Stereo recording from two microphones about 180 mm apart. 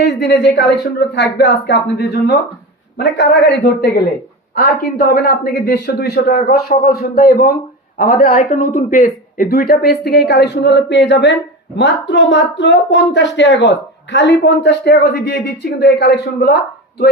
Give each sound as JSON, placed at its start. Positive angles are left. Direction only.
{"t": 0.0, "sound": "speech", "side_deg": 70}
{"t": 4.9, "sound": "speech", "side_deg": 50}